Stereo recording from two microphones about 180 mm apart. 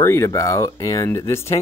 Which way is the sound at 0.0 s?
15° left (ahead or behind).